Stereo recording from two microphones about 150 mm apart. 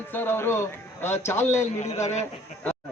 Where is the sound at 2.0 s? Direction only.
50° left (ahead or behind).